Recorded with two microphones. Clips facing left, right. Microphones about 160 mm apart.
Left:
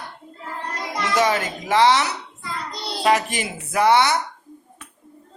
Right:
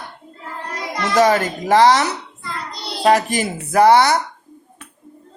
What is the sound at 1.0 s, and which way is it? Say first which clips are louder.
Speech: right 6 dB; 40° right (ahead or behind).